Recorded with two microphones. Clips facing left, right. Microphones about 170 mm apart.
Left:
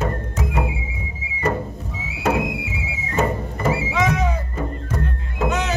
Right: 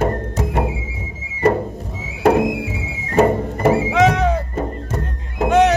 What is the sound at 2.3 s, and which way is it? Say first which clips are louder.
Music: right 6 dB; 45° right (ahead or behind).